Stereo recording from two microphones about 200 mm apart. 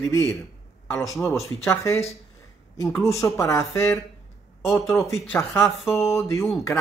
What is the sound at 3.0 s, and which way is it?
Speech, 15° left (ahead or behind).